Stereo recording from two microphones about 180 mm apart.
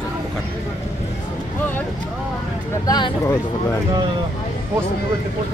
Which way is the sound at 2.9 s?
20° left (ahead or behind).